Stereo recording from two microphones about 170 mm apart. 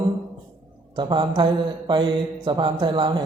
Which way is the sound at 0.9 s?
25° right (ahead or behind).